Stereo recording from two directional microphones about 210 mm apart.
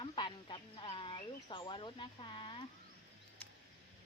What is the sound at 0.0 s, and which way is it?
Bird, 25° left (ahead or behind).